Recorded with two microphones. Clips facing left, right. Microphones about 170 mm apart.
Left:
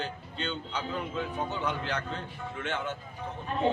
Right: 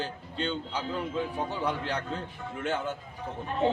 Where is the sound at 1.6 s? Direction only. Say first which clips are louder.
Right 2 dB; 35° right (ahead or behind).